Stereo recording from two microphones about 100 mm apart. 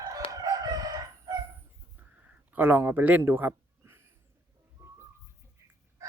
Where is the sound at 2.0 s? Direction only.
15° right (ahead or behind).